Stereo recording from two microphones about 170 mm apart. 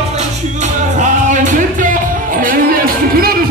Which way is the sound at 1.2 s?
50° right (ahead or behind).